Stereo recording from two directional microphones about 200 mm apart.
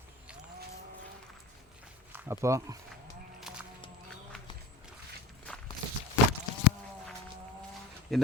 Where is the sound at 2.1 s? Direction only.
15° right (ahead or behind).